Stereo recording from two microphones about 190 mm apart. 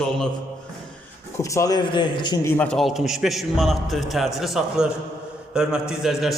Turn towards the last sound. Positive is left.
turn(degrees=0)  # may be behind; listen again after turning